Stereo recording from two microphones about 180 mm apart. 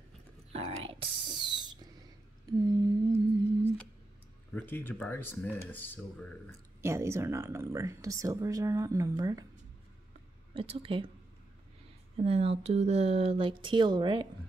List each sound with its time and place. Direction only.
0.5 s a sound: 35° right (ahead or behind)
4.6 s speech: 10° left (ahead or behind)
6.8 s speech: 15° right (ahead or behind)
10.5 s speech: 30° right (ahead or behind)
12.2 s speech: 35° right (ahead or behind)